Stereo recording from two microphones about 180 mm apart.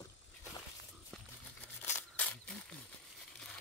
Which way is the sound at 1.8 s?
10° left (ahead or behind).